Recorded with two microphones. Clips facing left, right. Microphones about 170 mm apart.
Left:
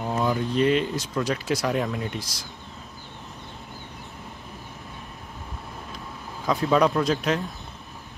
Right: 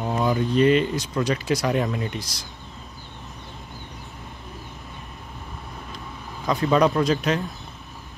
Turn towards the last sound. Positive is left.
turn(degrees=0)  # may be behind; listen again after turning